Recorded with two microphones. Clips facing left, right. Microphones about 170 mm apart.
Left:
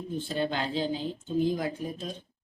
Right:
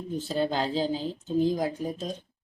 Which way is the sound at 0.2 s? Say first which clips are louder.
Right 3 dB; 35° right (ahead or behind).